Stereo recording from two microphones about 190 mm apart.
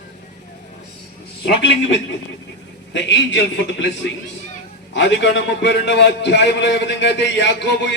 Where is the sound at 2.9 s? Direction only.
70° left (ahead or behind).